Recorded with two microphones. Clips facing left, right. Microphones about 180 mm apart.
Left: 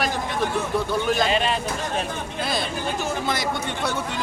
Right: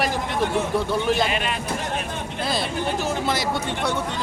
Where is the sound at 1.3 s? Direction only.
30° left (ahead or behind).